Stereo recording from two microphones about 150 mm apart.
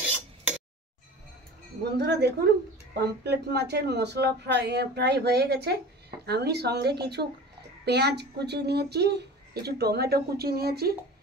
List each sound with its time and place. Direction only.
2.0 s speech: 90° right